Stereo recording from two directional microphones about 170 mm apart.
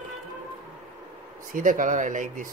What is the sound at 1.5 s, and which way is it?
Speech, 50° right (ahead or behind).